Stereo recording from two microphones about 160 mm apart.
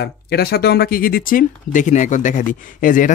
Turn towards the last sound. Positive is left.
turn(degrees=55)  # may be behind; listen again after turning